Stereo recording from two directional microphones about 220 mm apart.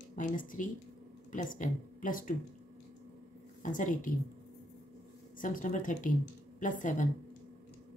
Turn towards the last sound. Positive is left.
turn(degrees=35)  # may be behind; listen again after turning